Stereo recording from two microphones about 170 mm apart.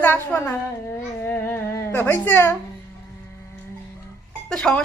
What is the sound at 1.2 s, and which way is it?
Baby cry, 10° left (ahead or behind).